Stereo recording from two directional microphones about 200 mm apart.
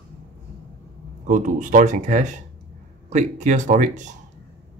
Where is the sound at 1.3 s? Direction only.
40° right (ahead or behind).